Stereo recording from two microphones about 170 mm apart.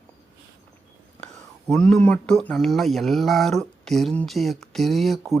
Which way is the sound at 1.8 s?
5° left (ahead or behind).